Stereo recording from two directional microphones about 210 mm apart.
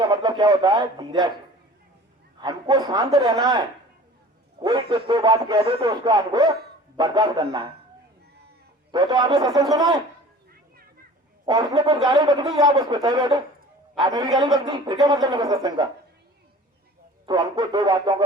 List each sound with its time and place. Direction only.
0.0 s speech: 20° right (ahead or behind)
2.4 s speech: 20° right (ahead or behind)
8.9 s speech: 20° right (ahead or behind)
11.4 s speech: 20° right (ahead or behind)
17.2 s speech: 20° right (ahead or behind)